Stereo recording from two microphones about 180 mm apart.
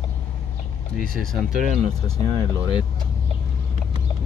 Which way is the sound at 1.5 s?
45° right (ahead or behind).